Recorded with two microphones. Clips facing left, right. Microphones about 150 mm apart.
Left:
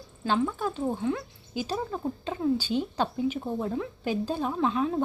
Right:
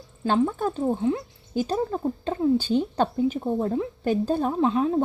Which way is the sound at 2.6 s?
50° right (ahead or behind).